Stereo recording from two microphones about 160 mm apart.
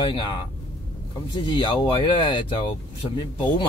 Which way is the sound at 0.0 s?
30° left (ahead or behind).